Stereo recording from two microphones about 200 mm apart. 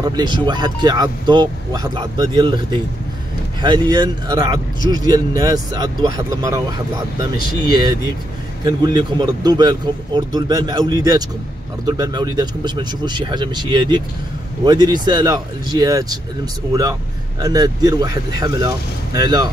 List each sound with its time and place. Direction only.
0.0 s a man's voice: 20° right (ahead or behind)
17.4 s a man's voice: 20° right (ahead or behind)